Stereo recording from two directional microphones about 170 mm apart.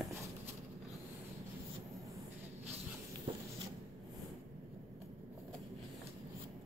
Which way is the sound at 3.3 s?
30° right (ahead or behind).